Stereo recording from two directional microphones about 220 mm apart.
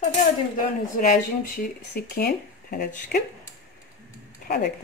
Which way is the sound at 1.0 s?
40° left (ahead or behind).